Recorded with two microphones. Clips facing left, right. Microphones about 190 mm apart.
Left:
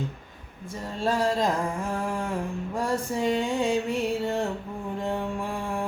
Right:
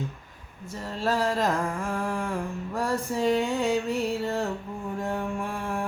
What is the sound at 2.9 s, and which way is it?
Music, 20° left (ahead or behind).